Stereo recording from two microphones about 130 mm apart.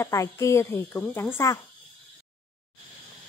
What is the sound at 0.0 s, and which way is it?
A woman's voice, 25° left (ahead or behind).